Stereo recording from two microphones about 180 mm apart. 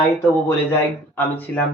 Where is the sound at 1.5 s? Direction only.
10° left (ahead or behind).